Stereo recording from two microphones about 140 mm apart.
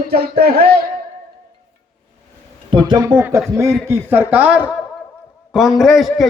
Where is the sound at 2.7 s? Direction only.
35° right (ahead or behind).